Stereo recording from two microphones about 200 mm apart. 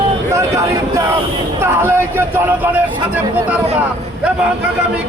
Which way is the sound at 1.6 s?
10° right (ahead or behind).